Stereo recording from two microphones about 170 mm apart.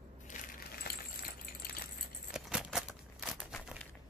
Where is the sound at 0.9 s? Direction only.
60° left (ahead or behind).